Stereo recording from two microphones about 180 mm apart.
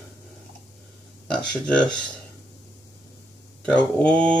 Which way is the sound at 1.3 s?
5° left (ahead or behind).